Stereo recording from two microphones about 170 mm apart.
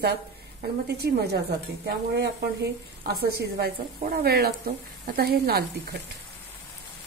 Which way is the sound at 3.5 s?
65° right (ahead or behind).